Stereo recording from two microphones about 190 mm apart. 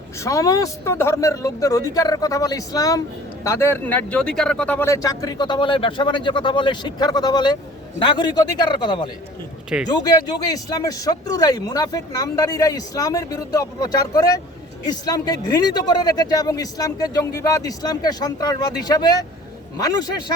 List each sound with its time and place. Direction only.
0.2 s speech: 15° left (ahead or behind)